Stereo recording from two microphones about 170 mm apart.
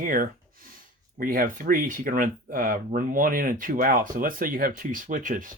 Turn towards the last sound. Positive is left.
turn(degrees=-50)  # may be behind; listen again after turning